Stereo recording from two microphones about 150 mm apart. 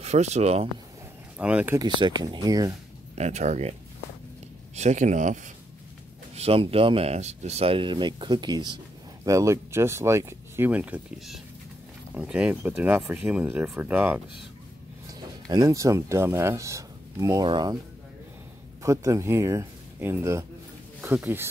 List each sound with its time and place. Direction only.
0.0 s speech: 45° right (ahead or behind)
1.4 s speech: 10° right (ahead or behind)
1.8 s speech: 30° right (ahead or behind)
3.2 s speech: 50° right (ahead or behind)
4.7 s speech: 50° right (ahead or behind)
6.3 s speech: 40° right (ahead or behind); by 14.2 s 10° right (ahead or behind)
15.0 s speech: 25° right (ahead or behind)
18.8 s speech: 20° right (ahead or behind)